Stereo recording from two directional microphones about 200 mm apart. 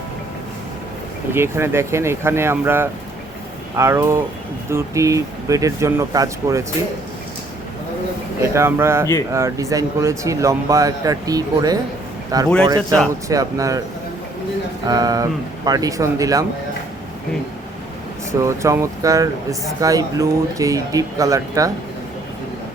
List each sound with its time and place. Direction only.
1.3 s speech: 10° right (ahead or behind)
8.4 s speech: 15° right (ahead or behind)
14.8 s speech: 20° right (ahead or behind)
18.3 s speech: 15° right (ahead or behind)